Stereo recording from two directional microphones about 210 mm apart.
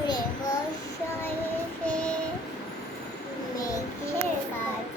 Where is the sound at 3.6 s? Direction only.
15° left (ahead or behind).